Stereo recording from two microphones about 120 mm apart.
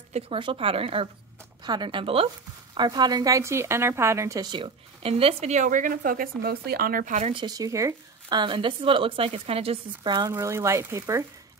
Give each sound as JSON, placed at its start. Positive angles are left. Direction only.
{"t": 0.1, "sound": "speech", "side_deg": -50}
{"t": 1.6, "sound": "speech", "side_deg": -40}
{"t": 2.7, "sound": "a woman's voice", "side_deg": -35}
{"t": 4.5, "sound": "speech", "side_deg": -45}
{"t": 6.3, "sound": "speech", "side_deg": 10}
{"t": 7.1, "sound": "speech", "side_deg": -70}
{"t": 7.3, "sound": "speech", "side_deg": -35}
{"t": 8.4, "sound": "speech", "side_deg": -45}
{"t": 10.0, "sound": "speech", "side_deg": -35}
{"t": 10.3, "sound": "a woman's voice", "side_deg": -25}